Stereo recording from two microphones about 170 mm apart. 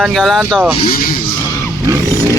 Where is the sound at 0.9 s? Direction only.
60° left (ahead or behind).